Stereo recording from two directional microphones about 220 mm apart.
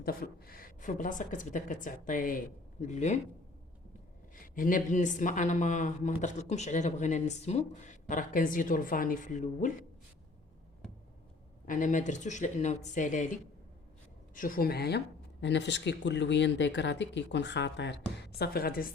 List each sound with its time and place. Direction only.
0.0 s speech: 40° left (ahead or behind)
4.4 s speech: 40° left (ahead or behind)
11.6 s speech: 35° left (ahead or behind)